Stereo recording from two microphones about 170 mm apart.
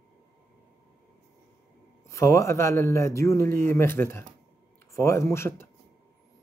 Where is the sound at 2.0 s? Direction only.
15° left (ahead or behind).